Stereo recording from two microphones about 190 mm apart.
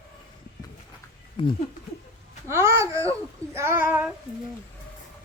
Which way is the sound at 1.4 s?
25° left (ahead or behind).